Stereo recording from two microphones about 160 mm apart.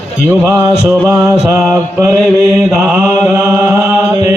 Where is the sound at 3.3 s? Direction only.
15° right (ahead or behind).